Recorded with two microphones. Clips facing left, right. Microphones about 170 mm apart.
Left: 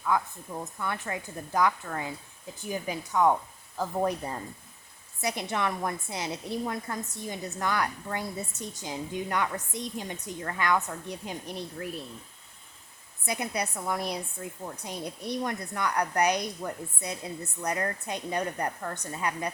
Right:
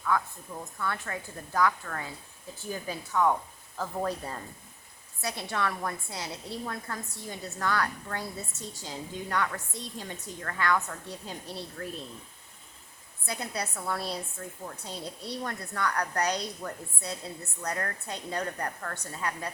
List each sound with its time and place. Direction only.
0.1 s a woman's voice: 15° left (ahead or behind)
13.2 s a woman's voice: 20° left (ahead or behind)